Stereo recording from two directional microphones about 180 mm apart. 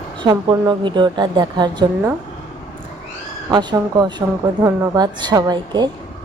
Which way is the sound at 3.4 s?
20° right (ahead or behind).